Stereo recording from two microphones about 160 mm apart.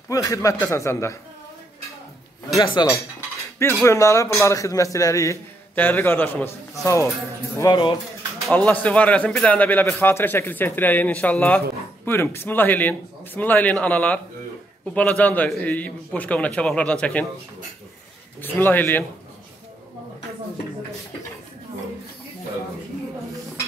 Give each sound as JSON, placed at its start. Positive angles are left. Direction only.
{"t": 0.1, "sound": "a man's voice", "side_deg": 20}
{"t": 2.5, "sound": "a man's voice", "side_deg": 30}
{"t": 8.5, "sound": "a man's voice", "side_deg": 10}
{"t": 18.4, "sound": "a man's voice", "side_deg": 10}